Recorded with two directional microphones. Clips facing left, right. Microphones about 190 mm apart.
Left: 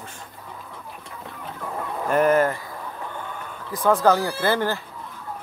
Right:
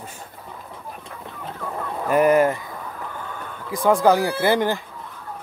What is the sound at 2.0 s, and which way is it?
Speech, 10° right (ahead or behind).